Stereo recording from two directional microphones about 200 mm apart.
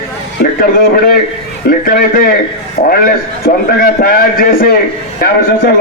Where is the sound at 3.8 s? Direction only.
45° left (ahead or behind).